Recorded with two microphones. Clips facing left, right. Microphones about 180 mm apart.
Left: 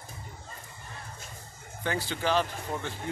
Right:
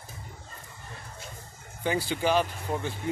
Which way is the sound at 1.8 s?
15° right (ahead or behind).